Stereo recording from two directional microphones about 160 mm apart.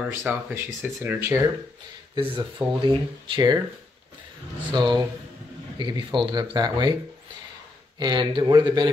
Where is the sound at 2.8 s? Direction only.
30° right (ahead or behind).